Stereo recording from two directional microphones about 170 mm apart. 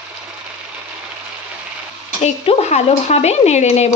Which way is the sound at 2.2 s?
40° left (ahead or behind).